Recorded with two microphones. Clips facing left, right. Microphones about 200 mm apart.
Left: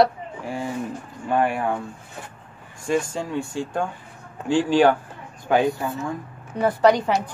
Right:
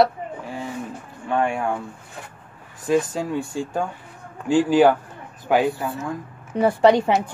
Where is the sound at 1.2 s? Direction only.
5° left (ahead or behind).